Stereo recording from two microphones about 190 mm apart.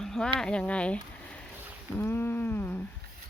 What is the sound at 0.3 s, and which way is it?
Speech, 5° left (ahead or behind).